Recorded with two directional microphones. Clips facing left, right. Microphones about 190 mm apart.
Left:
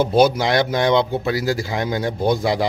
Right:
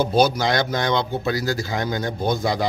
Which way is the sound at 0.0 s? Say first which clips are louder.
Left 3 dB; 25° left (ahead or behind).